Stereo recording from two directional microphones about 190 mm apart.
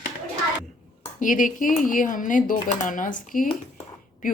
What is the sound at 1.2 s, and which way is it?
Speech, 45° left (ahead or behind).